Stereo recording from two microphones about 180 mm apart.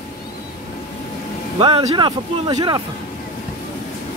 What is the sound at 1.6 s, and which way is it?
Speech, 30° right (ahead or behind).